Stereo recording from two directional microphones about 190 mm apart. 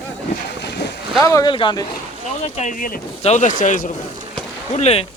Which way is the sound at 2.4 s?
35° left (ahead or behind).